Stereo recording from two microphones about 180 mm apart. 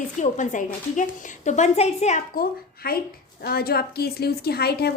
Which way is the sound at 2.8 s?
60° left (ahead or behind).